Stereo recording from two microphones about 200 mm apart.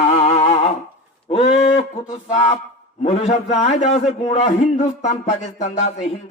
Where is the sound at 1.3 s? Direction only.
30° left (ahead or behind).